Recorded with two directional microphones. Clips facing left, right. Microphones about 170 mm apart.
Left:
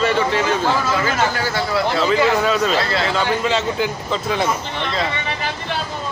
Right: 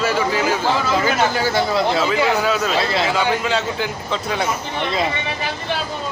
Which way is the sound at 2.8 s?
15° right (ahead or behind).